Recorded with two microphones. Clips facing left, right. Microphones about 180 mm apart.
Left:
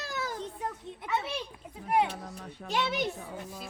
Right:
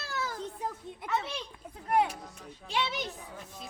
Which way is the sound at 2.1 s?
60° left (ahead or behind).